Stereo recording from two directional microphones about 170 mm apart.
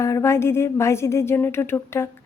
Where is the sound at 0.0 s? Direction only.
15° left (ahead or behind).